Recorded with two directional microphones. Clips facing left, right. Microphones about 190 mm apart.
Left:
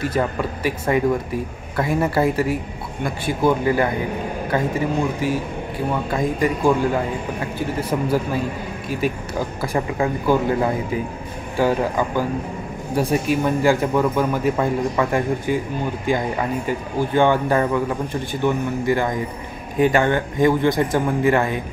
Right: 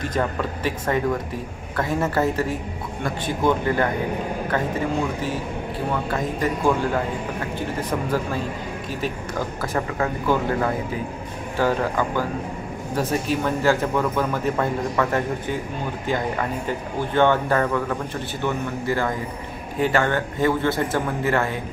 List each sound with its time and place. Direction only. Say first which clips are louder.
0.0 s a man's voice: left 3 dB; 10° left (ahead or behind)
9.0 s a man's voice: left 4 dB; 10° left (ahead or behind)